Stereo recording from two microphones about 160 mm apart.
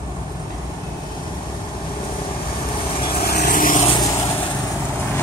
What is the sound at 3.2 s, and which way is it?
Vehicle, 70° left (ahead or behind).